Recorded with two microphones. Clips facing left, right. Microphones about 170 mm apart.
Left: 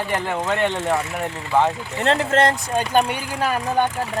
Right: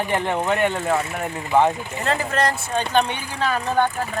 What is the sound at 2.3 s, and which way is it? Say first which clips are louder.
Speech: left 4 dB; 25° left (ahead or behind).